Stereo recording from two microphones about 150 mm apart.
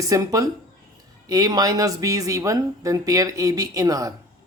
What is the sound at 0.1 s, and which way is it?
Speech, 25° right (ahead or behind).